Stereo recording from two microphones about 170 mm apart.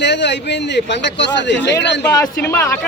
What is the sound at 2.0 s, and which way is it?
Speech, 15° left (ahead or behind).